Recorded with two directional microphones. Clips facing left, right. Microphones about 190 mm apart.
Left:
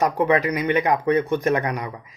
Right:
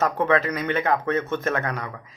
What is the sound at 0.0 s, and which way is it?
Speech, 15° left (ahead or behind).